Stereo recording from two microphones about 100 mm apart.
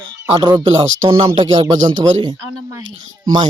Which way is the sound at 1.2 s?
50° right (ahead or behind).